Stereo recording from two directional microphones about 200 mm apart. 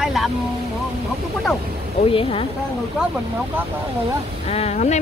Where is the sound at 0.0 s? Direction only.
Centre (ahead or behind).